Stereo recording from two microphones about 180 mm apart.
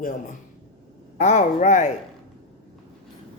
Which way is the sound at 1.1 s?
40° left (ahead or behind).